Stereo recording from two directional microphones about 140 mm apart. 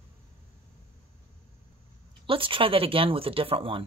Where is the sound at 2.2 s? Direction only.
40° right (ahead or behind).